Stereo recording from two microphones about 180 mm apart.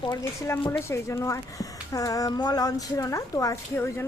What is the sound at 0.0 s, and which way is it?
A woman's voice, 20° left (ahead or behind).